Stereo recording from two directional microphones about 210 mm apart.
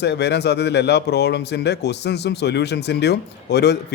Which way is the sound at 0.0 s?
55° left (ahead or behind).